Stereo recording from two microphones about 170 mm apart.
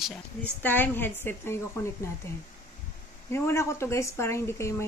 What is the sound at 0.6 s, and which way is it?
Speech, 10° left (ahead or behind).